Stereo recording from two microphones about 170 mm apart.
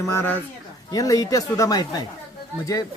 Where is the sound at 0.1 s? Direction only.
15° left (ahead or behind).